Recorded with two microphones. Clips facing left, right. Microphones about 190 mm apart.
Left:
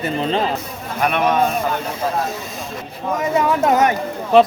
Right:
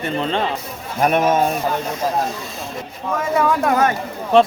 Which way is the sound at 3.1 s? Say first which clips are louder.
Even; 20° left (ahead or behind).